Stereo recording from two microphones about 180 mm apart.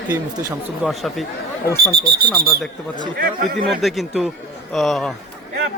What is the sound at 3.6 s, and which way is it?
A man's voice, centre (ahead or behind).